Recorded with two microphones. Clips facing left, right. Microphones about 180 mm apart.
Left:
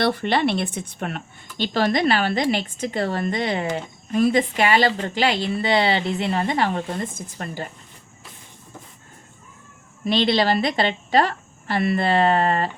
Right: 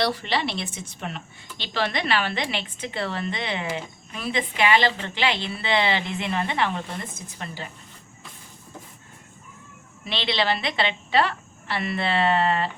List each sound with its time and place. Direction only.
0.0 s a woman's voice: 55° left (ahead or behind)
10.0 s a woman's voice: 45° left (ahead or behind)